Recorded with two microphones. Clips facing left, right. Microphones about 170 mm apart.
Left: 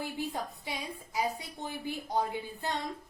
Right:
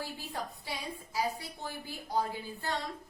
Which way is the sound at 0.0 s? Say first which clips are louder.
Left 4 dB; 20° left (ahead or behind).